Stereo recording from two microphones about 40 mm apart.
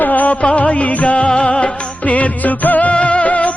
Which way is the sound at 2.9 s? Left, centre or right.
Left.